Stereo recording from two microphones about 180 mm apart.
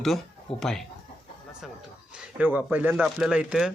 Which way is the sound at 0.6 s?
Centre (ahead or behind).